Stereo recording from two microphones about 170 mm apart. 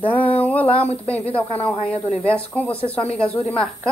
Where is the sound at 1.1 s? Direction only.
10° left (ahead or behind).